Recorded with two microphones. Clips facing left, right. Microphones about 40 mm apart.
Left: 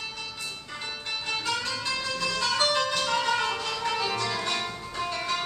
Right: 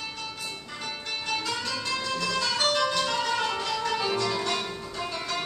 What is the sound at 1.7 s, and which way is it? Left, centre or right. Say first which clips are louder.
Music: right 1 dB; centre.